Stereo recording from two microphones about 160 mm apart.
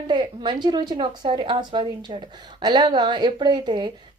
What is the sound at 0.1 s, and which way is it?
A woman's voice, 30° right (ahead or behind).